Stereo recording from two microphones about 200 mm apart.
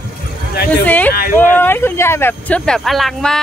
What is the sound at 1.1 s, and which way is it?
Speech, 50° left (ahead or behind).